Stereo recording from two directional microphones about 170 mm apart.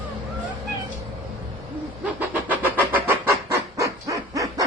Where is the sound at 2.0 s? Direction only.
10° right (ahead or behind).